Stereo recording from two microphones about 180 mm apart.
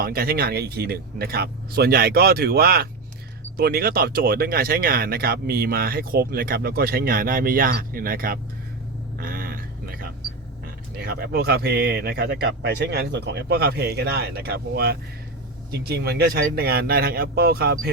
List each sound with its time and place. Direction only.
0.0 s speech: 55° right (ahead or behind)
9.1 s a sound: 55° right (ahead or behind)
10.9 s speech: 60° right (ahead or behind)